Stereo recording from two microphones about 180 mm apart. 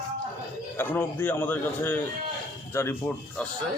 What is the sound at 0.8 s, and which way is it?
A man's voice, 10° left (ahead or behind).